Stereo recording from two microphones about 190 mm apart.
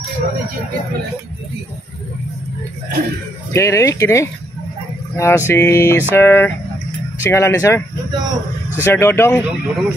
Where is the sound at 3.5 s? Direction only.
15° left (ahead or behind).